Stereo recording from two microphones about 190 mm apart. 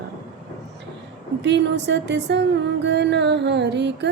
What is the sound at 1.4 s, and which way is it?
A woman's voice, 65° right (ahead or behind).